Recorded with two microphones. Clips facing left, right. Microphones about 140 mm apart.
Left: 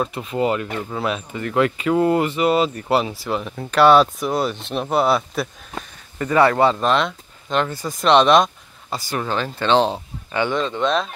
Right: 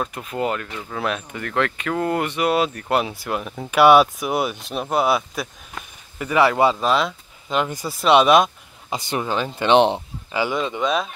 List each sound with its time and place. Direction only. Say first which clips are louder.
0.0 s speech: left 3 dB; centre (ahead or behind)
8.9 s speech: even; 20° right (ahead or behind)
10.3 s speech: left 1 dB; 10° right (ahead or behind)